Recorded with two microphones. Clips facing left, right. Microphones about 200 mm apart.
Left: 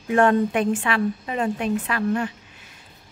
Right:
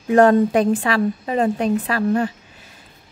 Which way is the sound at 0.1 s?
35° right (ahead or behind).